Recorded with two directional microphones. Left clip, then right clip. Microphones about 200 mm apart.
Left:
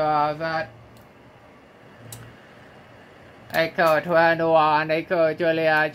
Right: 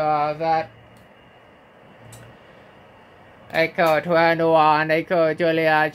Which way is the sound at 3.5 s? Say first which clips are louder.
Right 1 dB; 10° right (ahead or behind).